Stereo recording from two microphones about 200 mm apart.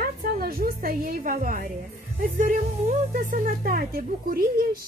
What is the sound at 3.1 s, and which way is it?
A woman's voice, 40° right (ahead or behind).